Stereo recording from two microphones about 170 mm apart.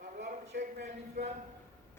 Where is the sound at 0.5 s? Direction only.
70° right (ahead or behind).